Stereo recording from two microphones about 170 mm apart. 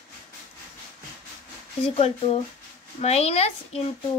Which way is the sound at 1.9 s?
40° left (ahead or behind).